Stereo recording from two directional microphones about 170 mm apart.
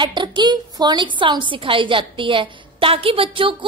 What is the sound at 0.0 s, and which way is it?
A woman's voice, 25° right (ahead or behind).